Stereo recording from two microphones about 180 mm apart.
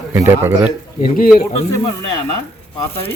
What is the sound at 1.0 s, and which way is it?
Speech, 50° left (ahead or behind).